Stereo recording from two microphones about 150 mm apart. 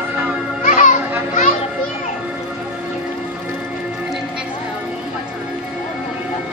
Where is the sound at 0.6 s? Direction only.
55° left (ahead or behind).